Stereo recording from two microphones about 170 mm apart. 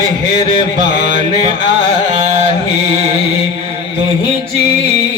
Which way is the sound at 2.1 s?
45° right (ahead or behind).